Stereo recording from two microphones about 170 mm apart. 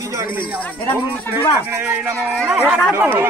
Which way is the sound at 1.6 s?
15° right (ahead or behind).